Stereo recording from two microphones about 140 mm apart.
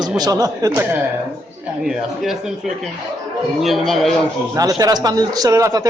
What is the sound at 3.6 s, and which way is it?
Speech, centre (ahead or behind).